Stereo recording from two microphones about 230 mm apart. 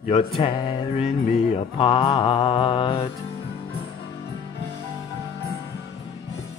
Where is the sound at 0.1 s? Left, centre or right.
Left.